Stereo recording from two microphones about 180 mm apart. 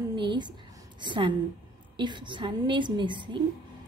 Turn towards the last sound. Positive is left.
turn(degrees=-25)  # may be behind; listen again after turning